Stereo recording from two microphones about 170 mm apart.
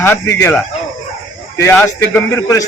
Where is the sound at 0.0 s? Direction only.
15° left (ahead or behind).